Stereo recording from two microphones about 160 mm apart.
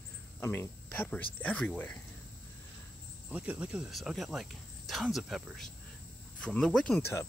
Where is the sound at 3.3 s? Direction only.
10° right (ahead or behind).